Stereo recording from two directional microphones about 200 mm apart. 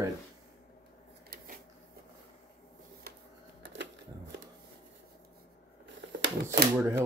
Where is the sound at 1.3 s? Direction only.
45° right (ahead or behind).